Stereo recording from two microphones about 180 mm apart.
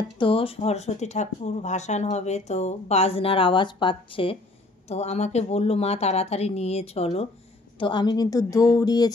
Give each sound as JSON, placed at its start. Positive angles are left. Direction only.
{"t": 0.2, "sound": "a woman's voice", "side_deg": 30}